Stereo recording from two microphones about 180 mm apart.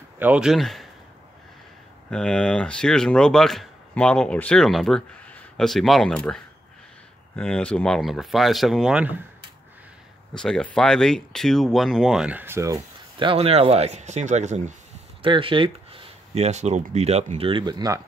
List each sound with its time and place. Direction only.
0.2 s speech: 5° right (ahead or behind)
2.0 s speech: 5° left (ahead or behind)
10.3 s speech: 5° left (ahead or behind); by 14.8 s 40° right (ahead or behind)
15.2 s speech: 30° right (ahead or behind)